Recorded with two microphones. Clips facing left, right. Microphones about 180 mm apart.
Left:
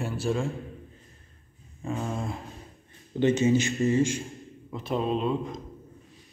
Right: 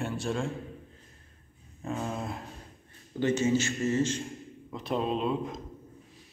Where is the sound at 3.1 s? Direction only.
20° left (ahead or behind).